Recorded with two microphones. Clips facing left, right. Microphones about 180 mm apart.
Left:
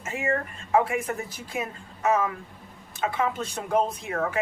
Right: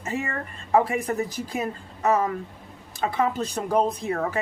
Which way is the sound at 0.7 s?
35° right (ahead or behind).